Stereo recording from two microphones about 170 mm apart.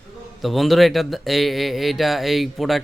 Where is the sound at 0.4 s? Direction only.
Centre (ahead or behind).